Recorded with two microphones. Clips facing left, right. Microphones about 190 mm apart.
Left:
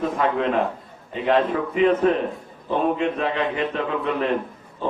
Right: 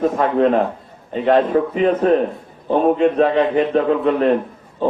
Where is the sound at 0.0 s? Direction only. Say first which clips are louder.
Right 6 dB; 45° right (ahead or behind).